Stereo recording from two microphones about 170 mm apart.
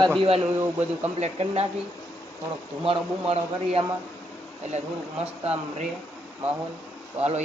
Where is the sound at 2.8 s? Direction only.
35° right (ahead or behind).